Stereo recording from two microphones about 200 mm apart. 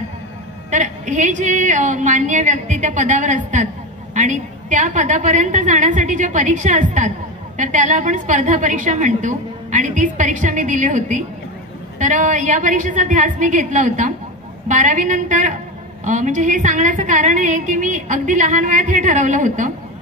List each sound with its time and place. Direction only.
0.7 s a woman's voice: 40° right (ahead or behind)